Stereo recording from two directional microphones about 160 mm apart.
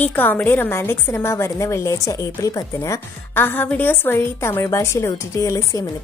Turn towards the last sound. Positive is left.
turn(degrees=20)  # may be behind; listen again after turning